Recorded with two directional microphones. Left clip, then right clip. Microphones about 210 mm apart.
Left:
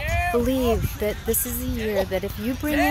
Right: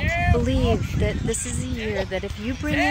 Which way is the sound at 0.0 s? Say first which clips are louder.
Even; 45° left (ahead or behind).